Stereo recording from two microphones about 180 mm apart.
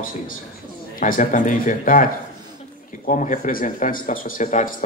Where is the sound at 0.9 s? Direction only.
50° left (ahead or behind).